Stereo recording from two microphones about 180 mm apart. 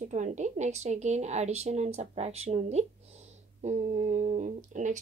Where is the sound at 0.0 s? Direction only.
40° right (ahead or behind).